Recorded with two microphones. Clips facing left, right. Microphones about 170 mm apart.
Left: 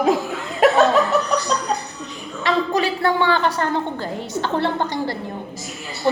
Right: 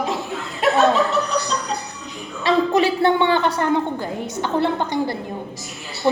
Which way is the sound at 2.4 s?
25° right (ahead or behind).